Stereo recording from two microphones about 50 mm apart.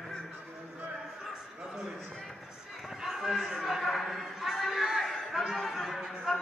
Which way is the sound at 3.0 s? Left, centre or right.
Centre.